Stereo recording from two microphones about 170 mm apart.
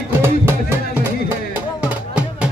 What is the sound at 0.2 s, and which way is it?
Music, 15° right (ahead or behind).